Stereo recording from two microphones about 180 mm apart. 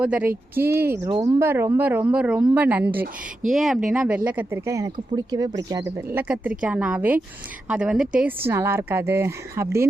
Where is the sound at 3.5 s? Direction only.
Centre (ahead or behind).